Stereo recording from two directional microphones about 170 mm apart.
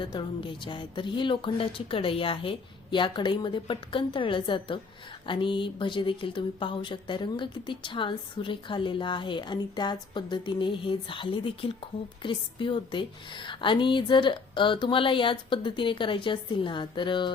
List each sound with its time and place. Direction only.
0.0 s speech: 30° left (ahead or behind)